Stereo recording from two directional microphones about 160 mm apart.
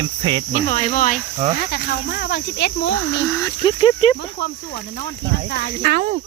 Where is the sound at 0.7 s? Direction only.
45° left (ahead or behind).